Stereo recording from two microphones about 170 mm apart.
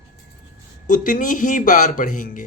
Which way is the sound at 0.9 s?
50° left (ahead or behind).